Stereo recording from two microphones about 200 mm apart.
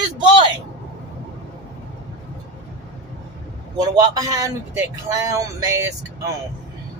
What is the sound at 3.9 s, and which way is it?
Speech, 20° right (ahead or behind).